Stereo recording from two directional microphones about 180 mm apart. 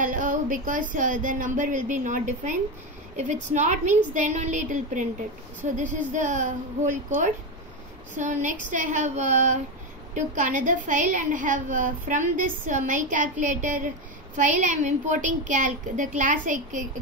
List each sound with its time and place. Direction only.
0.0 s a woman's voice: 45° right (ahead or behind)
8.2 s a woman's voice: 45° right (ahead or behind)